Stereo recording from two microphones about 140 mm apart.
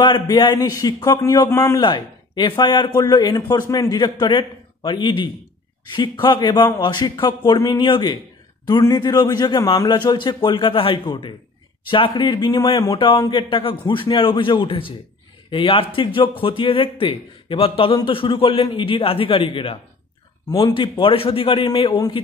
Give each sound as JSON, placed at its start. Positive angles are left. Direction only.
{"t": 0.0, "sound": "a man's voice", "side_deg": 35}
{"t": 1.8, "sound": "speech", "side_deg": 30}
{"t": 13.3, "sound": "speech", "side_deg": 35}